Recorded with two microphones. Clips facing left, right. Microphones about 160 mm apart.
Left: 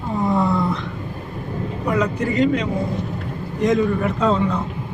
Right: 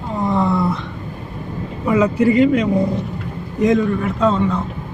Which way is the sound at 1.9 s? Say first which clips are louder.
Right 7 dB; 10° right (ahead or behind).